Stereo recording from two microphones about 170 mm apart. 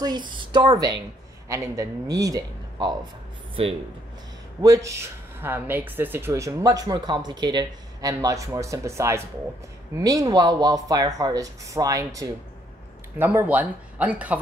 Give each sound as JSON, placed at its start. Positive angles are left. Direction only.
{"t": 0.0, "sound": "speech", "side_deg": -25}
{"t": 4.6, "sound": "speech", "side_deg": -20}